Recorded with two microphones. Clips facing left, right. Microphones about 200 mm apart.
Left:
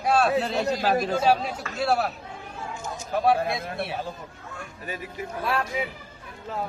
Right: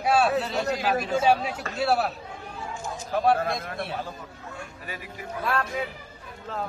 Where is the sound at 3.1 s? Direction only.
Centre (ahead or behind).